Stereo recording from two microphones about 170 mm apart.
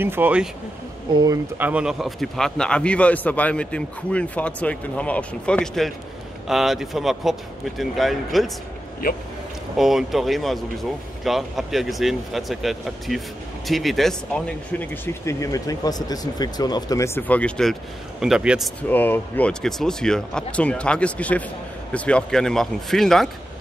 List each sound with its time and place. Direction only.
0.0 s speech: 10° right (ahead or behind)
1.1 s speech: 20° right (ahead or behind)
1.6 s a man's voice: 5° right (ahead or behind)
9.0 s speech: 55° left (ahead or behind)
9.8 s speech: centre (ahead or behind)
15.2 s speech: 20° left (ahead or behind); by 18.7 s 5° right (ahead or behind)
18.8 s a man's voice: 10° left (ahead or behind)